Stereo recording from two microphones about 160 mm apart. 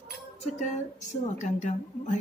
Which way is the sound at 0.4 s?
45° left (ahead or behind).